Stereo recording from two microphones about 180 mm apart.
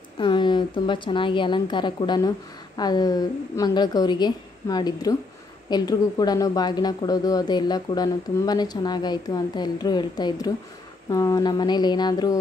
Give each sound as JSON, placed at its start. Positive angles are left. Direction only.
{"t": 0.2, "sound": "speech", "side_deg": 25}